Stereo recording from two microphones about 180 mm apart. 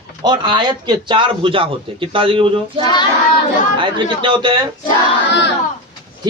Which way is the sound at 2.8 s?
25° left (ahead or behind).